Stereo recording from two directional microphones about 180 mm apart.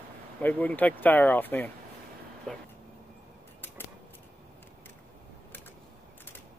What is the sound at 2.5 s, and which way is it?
Vehicle, 5° left (ahead or behind).